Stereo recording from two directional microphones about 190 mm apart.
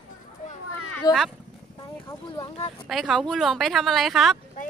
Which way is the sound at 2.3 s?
35° left (ahead or behind).